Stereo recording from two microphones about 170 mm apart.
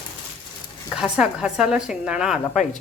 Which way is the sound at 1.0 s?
5° right (ahead or behind).